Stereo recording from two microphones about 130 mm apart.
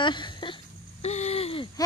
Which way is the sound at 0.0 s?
35° left (ahead or behind).